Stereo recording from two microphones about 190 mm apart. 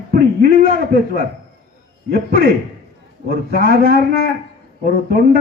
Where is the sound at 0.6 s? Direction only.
50° right (ahead or behind).